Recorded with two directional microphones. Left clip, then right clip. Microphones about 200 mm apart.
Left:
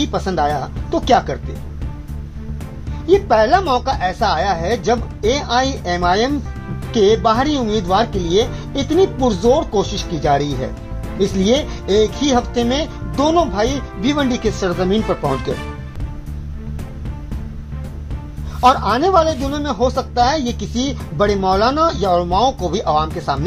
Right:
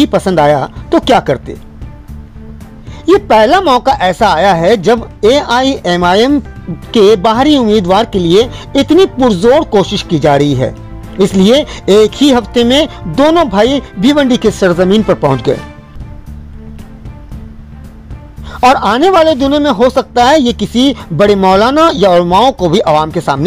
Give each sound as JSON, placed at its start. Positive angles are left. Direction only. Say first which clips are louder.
{"t": 0.0, "sound": "a woman's voice", "louder": "right 10 dB", "side_deg": -50}
{"t": 3.3, "sound": "a woman's voice", "louder": "right 8 dB", "side_deg": -50}
{"t": 18.5, "sound": "a woman's voice", "louder": "right 6 dB", "side_deg": -50}